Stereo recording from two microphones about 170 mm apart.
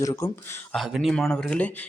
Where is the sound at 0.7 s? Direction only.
Centre (ahead or behind).